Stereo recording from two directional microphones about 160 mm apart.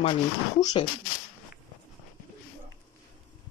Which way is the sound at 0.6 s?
25° left (ahead or behind).